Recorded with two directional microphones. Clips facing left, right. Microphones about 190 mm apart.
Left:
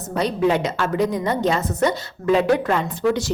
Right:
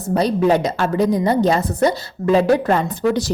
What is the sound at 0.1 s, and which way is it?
A woman's voice, 35° right (ahead or behind).